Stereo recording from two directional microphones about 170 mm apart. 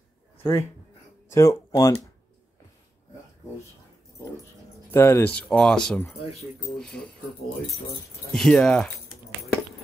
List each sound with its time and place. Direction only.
0.4 s speech: 15° left (ahead or behind)
4.9 s speech: 15° left (ahead or behind)
8.3 s speech: 5° left (ahead or behind)